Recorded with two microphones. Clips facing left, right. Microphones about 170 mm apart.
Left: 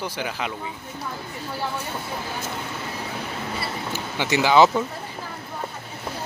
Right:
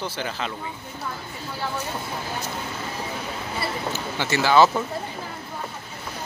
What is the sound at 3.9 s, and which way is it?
Speech, 15° left (ahead or behind).